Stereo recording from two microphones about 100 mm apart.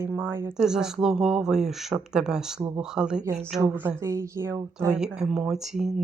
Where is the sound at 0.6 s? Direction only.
5° right (ahead or behind).